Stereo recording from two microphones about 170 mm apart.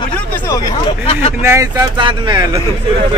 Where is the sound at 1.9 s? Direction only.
30° right (ahead or behind).